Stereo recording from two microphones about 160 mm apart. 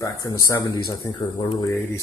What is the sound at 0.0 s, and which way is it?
Speech, 25° left (ahead or behind).